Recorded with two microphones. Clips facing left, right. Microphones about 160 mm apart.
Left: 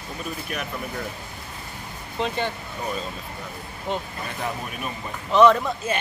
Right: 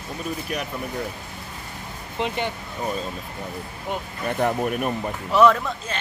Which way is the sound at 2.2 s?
15° right (ahead or behind).